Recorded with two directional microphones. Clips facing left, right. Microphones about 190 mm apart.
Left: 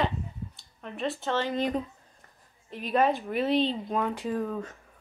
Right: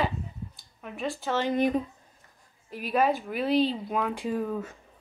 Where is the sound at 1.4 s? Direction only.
15° right (ahead or behind).